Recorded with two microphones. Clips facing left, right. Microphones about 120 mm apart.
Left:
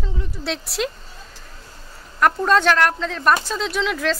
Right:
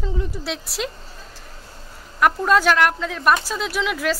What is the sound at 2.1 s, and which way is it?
A woman's voice, 5° right (ahead or behind).